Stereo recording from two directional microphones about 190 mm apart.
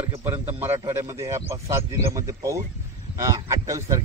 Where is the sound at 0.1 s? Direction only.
10° right (ahead or behind).